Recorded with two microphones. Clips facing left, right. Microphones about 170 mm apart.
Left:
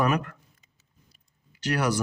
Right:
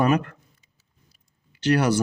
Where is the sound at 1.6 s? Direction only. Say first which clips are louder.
Right 6 dB; 25° right (ahead or behind).